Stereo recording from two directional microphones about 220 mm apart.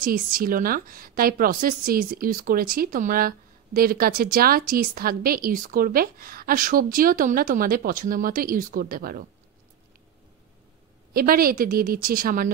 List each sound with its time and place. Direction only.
0.0 s speech: 40° right (ahead or behind)
11.1 s speech: 40° right (ahead or behind)